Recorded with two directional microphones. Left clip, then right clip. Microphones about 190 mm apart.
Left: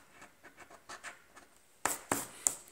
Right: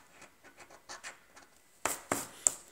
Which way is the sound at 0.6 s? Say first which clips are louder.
Right 1 dB; 10° right (ahead or behind).